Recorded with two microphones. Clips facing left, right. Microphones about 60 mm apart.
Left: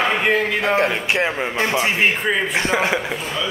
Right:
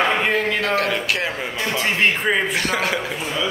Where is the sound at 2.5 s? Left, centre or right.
Left.